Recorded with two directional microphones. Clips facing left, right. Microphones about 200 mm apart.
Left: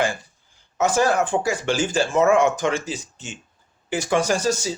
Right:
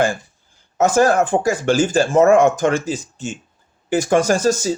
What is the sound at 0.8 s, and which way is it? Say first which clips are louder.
Speech: right 5 dB; 45° right (ahead or behind).